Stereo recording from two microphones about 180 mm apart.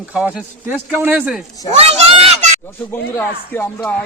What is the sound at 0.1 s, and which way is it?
Speech, 5° right (ahead or behind).